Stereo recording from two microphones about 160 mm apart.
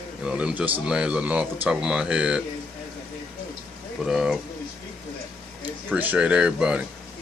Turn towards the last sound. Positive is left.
turn(degrees=-5)  # may be behind; listen again after turning